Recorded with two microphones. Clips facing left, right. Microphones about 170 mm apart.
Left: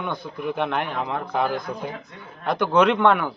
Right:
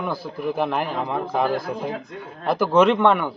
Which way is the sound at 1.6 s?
30° right (ahead or behind).